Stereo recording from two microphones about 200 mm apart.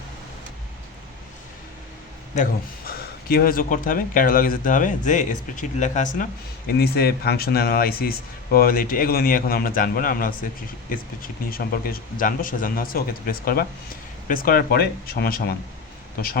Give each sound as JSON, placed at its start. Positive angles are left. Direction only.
{"t": 2.3, "sound": "a man's voice", "side_deg": 45}
{"t": 6.7, "sound": "speech", "side_deg": 50}